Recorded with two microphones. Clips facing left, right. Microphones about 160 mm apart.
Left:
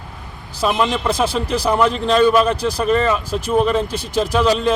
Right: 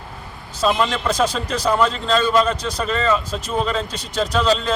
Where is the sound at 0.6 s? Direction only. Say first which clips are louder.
Left 1 dB; 10° left (ahead or behind).